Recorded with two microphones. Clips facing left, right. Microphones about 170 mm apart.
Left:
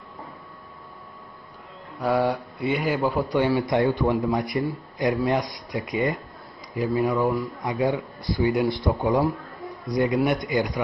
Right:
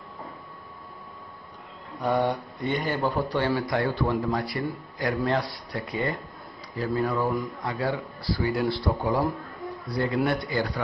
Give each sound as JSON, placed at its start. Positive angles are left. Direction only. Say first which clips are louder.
{"t": 2.0, "sound": "a man's voice", "louder": "left 2 dB", "side_deg": 0}
{"t": 7.2, "sound": "speech", "louder": "left 3 dB", "side_deg": 0}
{"t": 7.6, "sound": "a man's voice", "louder": "left 4 dB", "side_deg": 15}
{"t": 9.2, "sound": "a sound", "louder": "left 3 dB", "side_deg": 0}
{"t": 9.8, "sound": "a man's voice", "louder": "left 4 dB", "side_deg": 15}